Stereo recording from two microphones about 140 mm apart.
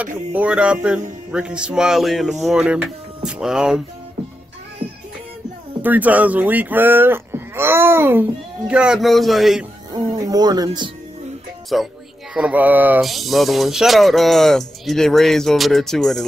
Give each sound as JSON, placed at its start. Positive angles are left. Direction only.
{"t": 0.4, "sound": "speech", "side_deg": -10}
{"t": 5.8, "sound": "speech", "side_deg": -10}
{"t": 9.9, "sound": "speech", "side_deg": -25}
{"t": 11.7, "sound": "speech", "side_deg": 0}
{"t": 13.0, "sound": "speech", "side_deg": 0}